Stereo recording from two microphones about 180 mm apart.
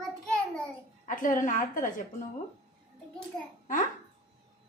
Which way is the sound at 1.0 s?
45° left (ahead or behind).